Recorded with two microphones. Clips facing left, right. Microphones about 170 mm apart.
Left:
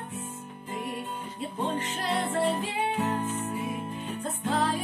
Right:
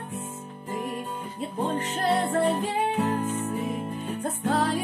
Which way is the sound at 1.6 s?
40° right (ahead or behind).